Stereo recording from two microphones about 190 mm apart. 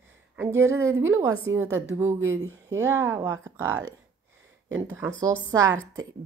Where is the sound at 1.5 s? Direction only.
90° right.